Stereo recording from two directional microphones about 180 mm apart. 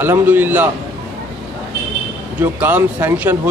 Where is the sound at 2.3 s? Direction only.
10° right (ahead or behind).